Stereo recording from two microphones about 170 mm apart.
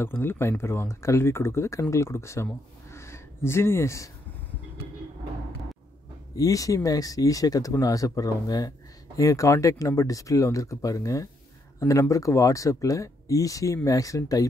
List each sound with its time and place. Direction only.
0.0 s speech: 15° left (ahead or behind)
6.3 s speech: 20° left (ahead or behind)